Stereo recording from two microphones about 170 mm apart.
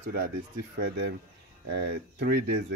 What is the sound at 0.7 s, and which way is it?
Speech, 80° right.